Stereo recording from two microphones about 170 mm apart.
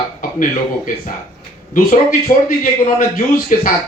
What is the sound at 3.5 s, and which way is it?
Speech, 50° left (ahead or behind).